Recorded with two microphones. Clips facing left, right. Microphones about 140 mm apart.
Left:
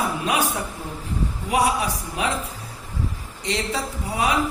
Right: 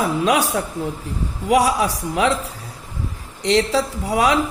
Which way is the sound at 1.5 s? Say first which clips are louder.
Right 5 dB; 80° right.